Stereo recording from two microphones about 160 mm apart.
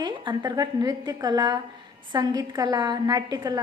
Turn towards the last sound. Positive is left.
turn(degrees=-25)  # may be behind; listen again after turning